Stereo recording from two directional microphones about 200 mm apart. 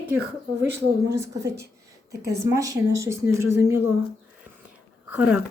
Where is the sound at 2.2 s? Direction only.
15° right (ahead or behind).